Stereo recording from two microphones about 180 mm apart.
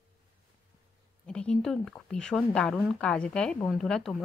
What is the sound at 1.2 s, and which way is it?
Speech, 5° left (ahead or behind).